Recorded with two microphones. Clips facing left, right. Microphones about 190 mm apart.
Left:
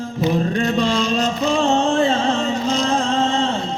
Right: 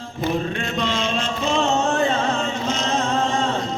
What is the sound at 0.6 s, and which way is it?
Chant, 35° left (ahead or behind).